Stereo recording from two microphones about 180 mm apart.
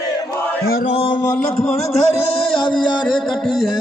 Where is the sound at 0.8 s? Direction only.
35° left (ahead or behind).